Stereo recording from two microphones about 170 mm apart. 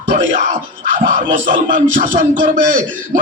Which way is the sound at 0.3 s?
50° right (ahead or behind).